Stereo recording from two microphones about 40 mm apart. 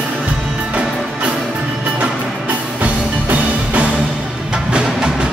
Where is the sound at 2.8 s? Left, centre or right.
Right.